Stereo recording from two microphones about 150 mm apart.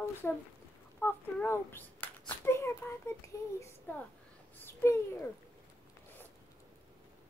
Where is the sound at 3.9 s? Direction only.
10° left (ahead or behind).